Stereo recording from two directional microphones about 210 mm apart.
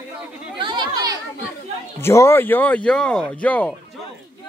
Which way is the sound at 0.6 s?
20° right (ahead or behind).